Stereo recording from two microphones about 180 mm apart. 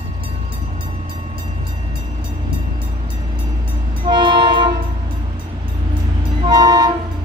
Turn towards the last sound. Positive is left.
turn(degrees=-20)  # may be behind; listen again after turning